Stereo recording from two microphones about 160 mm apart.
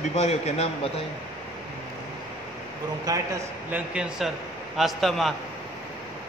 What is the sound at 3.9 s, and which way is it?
Speech, 5° right (ahead or behind).